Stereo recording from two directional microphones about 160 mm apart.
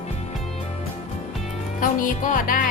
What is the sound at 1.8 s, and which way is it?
Music, 55° left (ahead or behind).